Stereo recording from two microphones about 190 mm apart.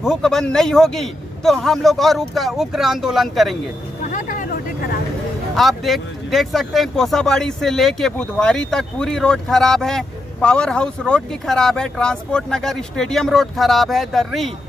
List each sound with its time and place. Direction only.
0.0 s speech: 5° left (ahead or behind)
4.0 s vehicle: 45° left (ahead or behind)
5.6 s speech: centre (ahead or behind)